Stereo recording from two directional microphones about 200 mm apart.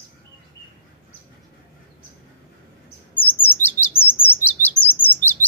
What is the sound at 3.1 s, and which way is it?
Chirp, 10° left (ahead or behind).